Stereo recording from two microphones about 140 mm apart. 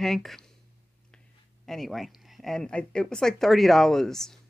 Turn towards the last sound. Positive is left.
turn(degrees=5)  # may be behind; listen again after turning